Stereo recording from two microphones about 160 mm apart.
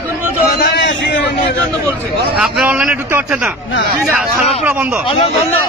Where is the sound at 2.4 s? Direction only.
5° right (ahead or behind).